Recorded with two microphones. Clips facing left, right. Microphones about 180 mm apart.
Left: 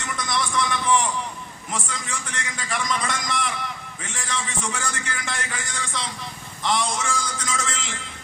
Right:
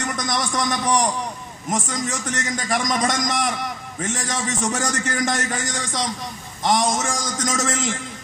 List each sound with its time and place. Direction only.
0.0 s a man's voice: 45° right (ahead or behind)